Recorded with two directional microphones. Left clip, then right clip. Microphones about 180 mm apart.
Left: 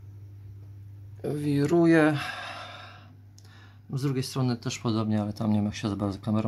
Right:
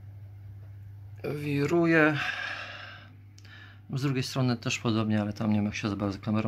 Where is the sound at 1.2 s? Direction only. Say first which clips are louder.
Left 2 dB; 25° left (ahead or behind).